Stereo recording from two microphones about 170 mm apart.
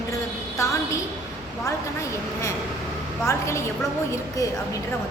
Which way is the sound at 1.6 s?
15° left (ahead or behind).